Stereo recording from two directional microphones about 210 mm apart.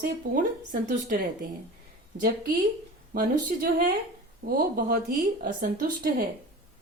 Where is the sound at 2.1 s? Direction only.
45° right (ahead or behind).